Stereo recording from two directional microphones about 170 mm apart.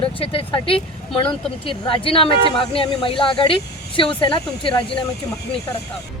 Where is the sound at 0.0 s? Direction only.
30° left (ahead or behind).